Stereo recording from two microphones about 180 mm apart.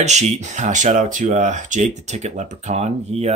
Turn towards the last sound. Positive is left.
turn(degrees=-35)  # may be behind; listen again after turning